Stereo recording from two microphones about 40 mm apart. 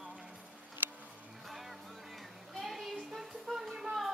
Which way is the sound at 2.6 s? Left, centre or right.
Centre.